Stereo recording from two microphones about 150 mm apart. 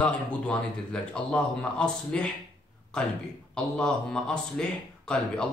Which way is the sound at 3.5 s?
5° left (ahead or behind).